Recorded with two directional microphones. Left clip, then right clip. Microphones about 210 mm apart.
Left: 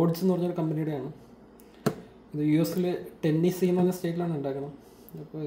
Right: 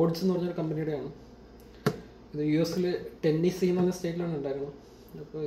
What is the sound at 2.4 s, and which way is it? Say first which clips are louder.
Speech: left 1 dB; 50° left (ahead or behind).